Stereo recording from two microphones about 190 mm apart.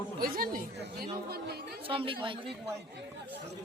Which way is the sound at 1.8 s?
30° right (ahead or behind).